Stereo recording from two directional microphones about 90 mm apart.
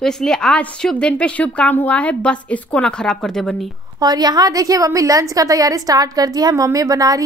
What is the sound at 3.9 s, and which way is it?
A woman's voice, 45° right (ahead or behind).